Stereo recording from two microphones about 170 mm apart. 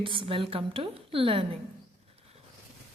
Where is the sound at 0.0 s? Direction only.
30° right (ahead or behind).